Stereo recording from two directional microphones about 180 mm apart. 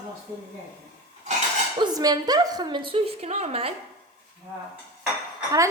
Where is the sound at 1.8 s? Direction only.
20° right (ahead or behind).